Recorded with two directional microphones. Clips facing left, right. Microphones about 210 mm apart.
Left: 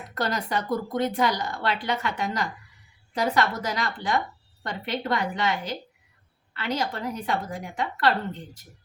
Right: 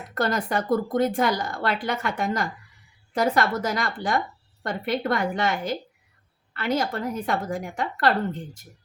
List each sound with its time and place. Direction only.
0.1 s a woman's voice: 50° right (ahead or behind)